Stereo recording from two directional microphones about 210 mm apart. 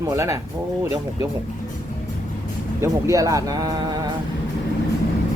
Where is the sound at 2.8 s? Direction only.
15° right (ahead or behind).